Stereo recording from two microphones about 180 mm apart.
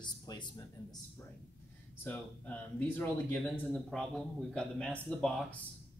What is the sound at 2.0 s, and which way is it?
Speech, 10° left (ahead or behind).